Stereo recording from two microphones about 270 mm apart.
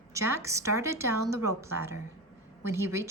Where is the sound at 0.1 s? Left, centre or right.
Centre.